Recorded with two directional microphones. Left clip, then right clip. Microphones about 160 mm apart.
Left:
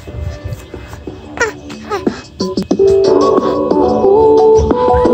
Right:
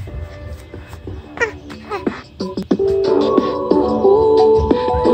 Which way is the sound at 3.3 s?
10° right (ahead or behind).